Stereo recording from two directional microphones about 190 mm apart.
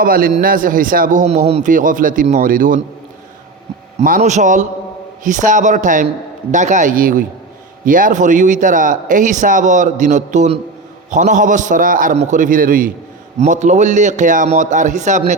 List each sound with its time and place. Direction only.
0.0 s a man's voice: 50° right (ahead or behind)
4.0 s a man's voice: 40° right (ahead or behind)